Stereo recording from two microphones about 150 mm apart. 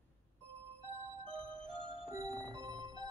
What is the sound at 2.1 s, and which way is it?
Music, 25° right (ahead or behind).